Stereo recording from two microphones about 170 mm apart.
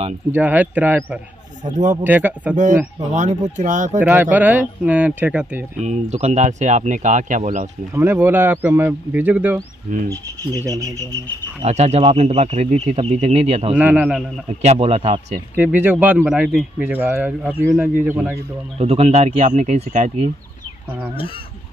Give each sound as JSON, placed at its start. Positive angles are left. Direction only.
{"t": 0.3, "sound": "speech", "side_deg": -10}
{"t": 1.6, "sound": "speech", "side_deg": -45}
{"t": 2.0, "sound": "speech", "side_deg": -10}
{"t": 3.2, "sound": "speech", "side_deg": -45}
{"t": 4.0, "sound": "speech", "side_deg": -10}
{"t": 5.8, "sound": "speech", "side_deg": -40}
{"t": 7.9, "sound": "speech", "side_deg": -10}
{"t": 11.6, "sound": "speech", "side_deg": -40}
{"t": 13.7, "sound": "speech", "side_deg": -10}
{"t": 14.6, "sound": "speech", "side_deg": -40}
{"t": 15.5, "sound": "speech", "side_deg": -10}
{"t": 18.8, "sound": "speech", "side_deg": -40}